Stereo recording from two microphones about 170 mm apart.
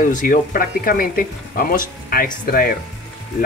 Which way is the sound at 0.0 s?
50° left (ahead or behind).